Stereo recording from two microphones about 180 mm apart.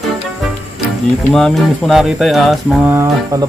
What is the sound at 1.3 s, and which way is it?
Speech, centre (ahead or behind).